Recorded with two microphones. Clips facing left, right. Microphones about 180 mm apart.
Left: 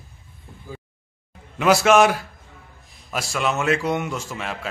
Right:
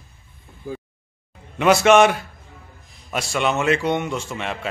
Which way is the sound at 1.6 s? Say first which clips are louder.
Right 2 dB; centre (ahead or behind).